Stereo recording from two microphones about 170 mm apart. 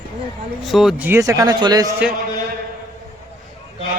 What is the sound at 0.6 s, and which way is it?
Speech, centre (ahead or behind).